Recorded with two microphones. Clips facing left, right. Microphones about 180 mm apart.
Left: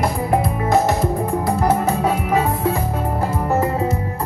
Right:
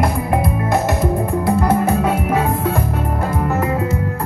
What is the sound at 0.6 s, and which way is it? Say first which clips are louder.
Music: left 2 dB; 55° right (ahead or behind).